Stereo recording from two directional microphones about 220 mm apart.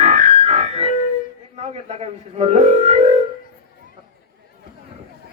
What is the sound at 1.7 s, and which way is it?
Speech, 30° right (ahead or behind).